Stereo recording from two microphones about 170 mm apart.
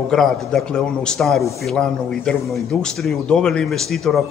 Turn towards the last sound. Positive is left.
turn(degrees=0)  # may be behind; listen again after turning